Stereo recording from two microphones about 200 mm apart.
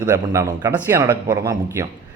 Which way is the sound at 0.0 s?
15° right (ahead or behind).